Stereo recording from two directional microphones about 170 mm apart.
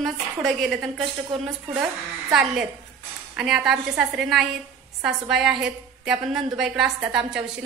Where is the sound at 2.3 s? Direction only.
5° right (ahead or behind).